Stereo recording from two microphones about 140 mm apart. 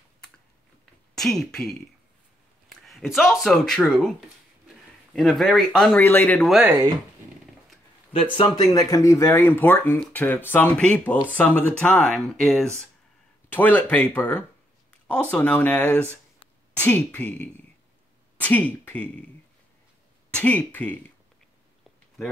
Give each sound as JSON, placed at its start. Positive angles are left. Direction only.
{"t": 1.1, "sound": "speech", "side_deg": 0}
{"t": 2.7, "sound": "a sound", "side_deg": 0}
{"t": 3.3, "sound": "speech", "side_deg": 0}
{"t": 5.1, "sound": "speech", "side_deg": 0}
{"t": 5.9, "sound": "speech", "side_deg": 15}
{"t": 8.1, "sound": "speech", "side_deg": 40}
{"t": 8.7, "sound": "speech", "side_deg": 25}
{"t": 20.3, "sound": "speech", "side_deg": 10}